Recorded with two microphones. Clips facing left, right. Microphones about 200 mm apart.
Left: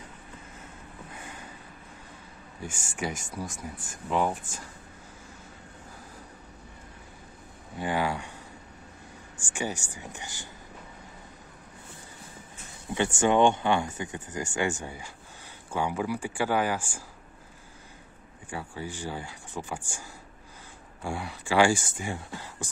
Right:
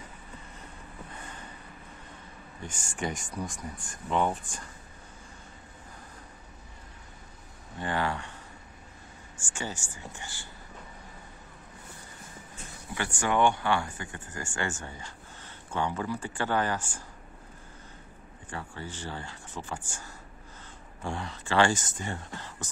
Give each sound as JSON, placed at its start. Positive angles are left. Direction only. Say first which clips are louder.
{"t": 1.1, "sound": "a sound", "louder": "left 2 dB", "side_deg": 10}
{"t": 2.6, "sound": "speech", "louder": "left 1 dB", "side_deg": 10}
{"t": 7.7, "sound": "speech", "louder": "left 2 dB", "side_deg": 10}
{"t": 9.4, "sound": "speech", "louder": "left 4 dB", "side_deg": 15}
{"t": 12.9, "sound": "speech", "louder": "left 5 dB", "side_deg": 20}
{"t": 18.5, "sound": "speech", "louder": "left 3 dB", "side_deg": 10}